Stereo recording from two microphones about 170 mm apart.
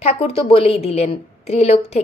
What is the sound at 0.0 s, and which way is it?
A woman's voice, 35° left (ahead or behind).